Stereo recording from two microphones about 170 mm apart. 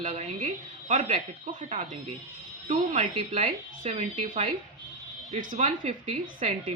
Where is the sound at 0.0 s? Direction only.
40° right (ahead or behind).